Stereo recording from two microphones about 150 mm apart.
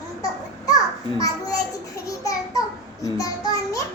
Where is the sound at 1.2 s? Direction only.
25° left (ahead or behind).